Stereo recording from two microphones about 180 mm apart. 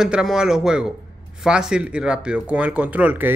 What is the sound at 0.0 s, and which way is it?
Speech, 5° right (ahead or behind).